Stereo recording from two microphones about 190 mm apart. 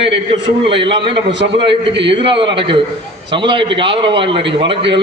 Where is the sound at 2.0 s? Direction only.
25° right (ahead or behind).